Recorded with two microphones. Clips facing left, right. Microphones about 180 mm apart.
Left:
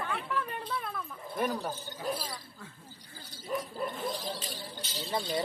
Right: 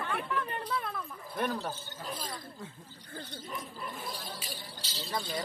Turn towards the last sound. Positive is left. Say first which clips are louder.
# left 3 dB
turn(degrees=25)  # may be behind; listen again after turning